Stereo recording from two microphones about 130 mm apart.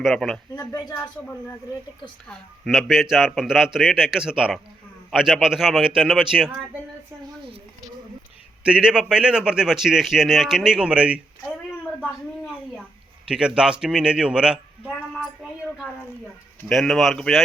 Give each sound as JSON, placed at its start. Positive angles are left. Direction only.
{"t": 0.0, "sound": "a man's voice", "side_deg": 0}
{"t": 0.5, "sound": "speech", "side_deg": 25}
{"t": 2.2, "sound": "a man's voice", "side_deg": 5}
{"t": 8.6, "sound": "a man's voice", "side_deg": -5}
{"t": 13.2, "sound": "a man's voice", "side_deg": -5}
{"t": 16.6, "sound": "a man's voice", "side_deg": 5}